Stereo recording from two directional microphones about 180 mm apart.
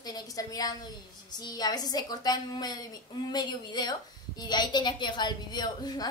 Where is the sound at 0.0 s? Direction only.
20° left (ahead or behind).